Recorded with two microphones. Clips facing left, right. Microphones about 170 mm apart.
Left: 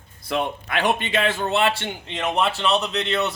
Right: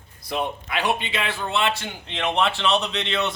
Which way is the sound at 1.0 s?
45° left (ahead or behind).